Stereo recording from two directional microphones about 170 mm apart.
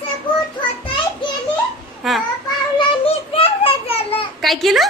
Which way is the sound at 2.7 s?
35° left (ahead or behind).